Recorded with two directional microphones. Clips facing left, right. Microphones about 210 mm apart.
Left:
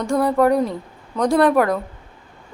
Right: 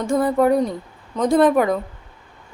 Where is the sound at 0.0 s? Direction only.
Centre (ahead or behind).